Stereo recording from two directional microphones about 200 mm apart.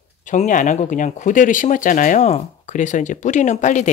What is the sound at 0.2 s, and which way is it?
Speech, 40° left (ahead or behind).